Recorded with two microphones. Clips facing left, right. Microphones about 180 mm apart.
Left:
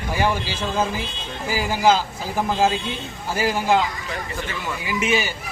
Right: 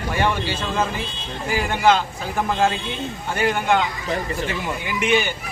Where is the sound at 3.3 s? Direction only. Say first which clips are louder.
Even; 5° left (ahead or behind).